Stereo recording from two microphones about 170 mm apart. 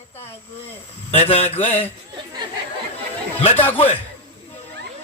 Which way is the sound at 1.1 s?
35° left (ahead or behind).